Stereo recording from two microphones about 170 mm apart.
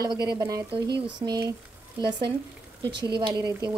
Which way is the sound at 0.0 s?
25° right (ahead or behind).